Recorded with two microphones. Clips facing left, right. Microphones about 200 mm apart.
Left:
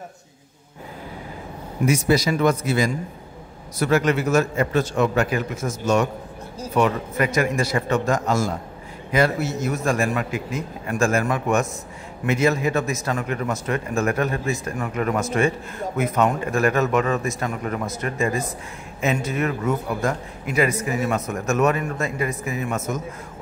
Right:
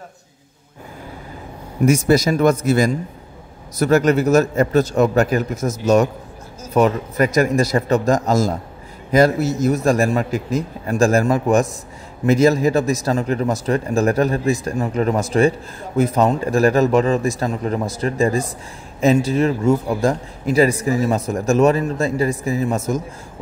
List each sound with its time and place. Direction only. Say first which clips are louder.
1.9 s speech: right 4 dB; 45° right (ahead or behind)